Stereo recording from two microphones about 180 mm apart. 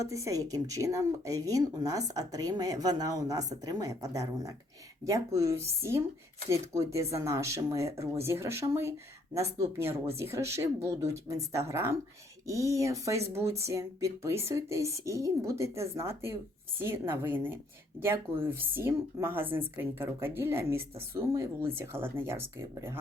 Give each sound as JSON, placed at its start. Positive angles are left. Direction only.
{"t": 0.0, "sound": "a woman's voice", "side_deg": -15}